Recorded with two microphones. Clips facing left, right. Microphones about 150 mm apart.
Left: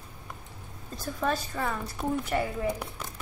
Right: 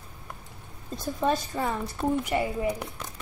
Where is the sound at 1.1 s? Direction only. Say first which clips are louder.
Right 3 dB; 20° right (ahead or behind).